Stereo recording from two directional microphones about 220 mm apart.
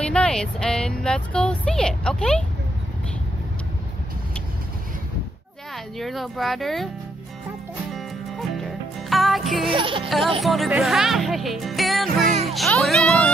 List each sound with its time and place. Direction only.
0.0 s speech: 5° left (ahead or behind)
5.9 s speech: centre (ahead or behind)
7.9 s music: centre (ahead or behind)
9.7 s music: 25° right (ahead or behind)
10.0 s speech: centre (ahead or behind)